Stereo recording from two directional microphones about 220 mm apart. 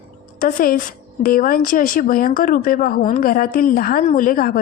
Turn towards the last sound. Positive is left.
turn(degrees=40)  # may be behind; listen again after turning